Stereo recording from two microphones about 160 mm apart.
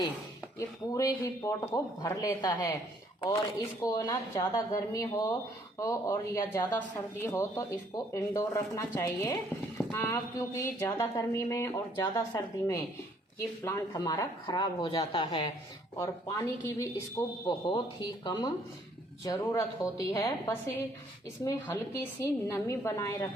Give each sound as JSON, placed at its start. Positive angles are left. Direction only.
{"t": 0.9, "sound": "speech", "side_deg": 20}
{"t": 3.8, "sound": "speech", "side_deg": 20}